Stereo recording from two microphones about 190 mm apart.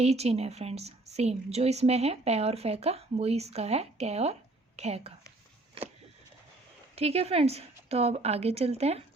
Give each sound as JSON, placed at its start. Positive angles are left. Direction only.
{"t": 0.0, "sound": "a woman's voice", "side_deg": -35}
{"t": 6.9, "sound": "a woman's voice", "side_deg": -30}